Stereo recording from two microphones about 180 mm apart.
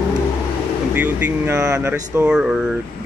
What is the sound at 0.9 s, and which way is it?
Speech, 10° right (ahead or behind).